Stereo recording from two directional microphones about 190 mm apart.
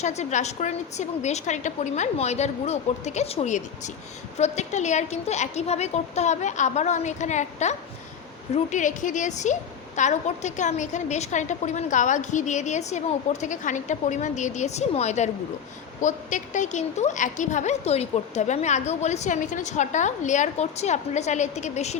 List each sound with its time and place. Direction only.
0.0 s a woman's voice: 35° left (ahead or behind)